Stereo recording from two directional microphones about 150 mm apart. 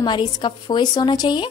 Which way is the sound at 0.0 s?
30° left (ahead or behind).